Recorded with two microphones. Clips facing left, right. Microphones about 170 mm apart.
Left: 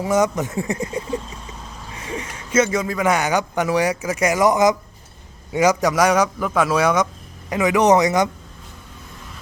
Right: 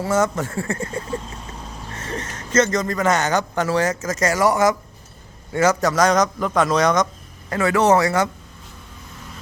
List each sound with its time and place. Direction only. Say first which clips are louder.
0.0 s a man's voice: left 1 dB; 15° left (ahead or behind)